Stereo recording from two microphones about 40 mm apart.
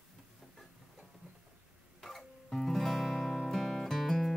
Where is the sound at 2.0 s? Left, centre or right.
Centre.